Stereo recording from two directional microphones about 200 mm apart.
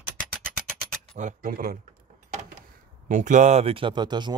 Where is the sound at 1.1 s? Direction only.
40° right (ahead or behind).